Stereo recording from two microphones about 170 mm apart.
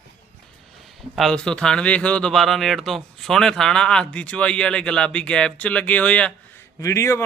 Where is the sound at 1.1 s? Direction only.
5° left (ahead or behind).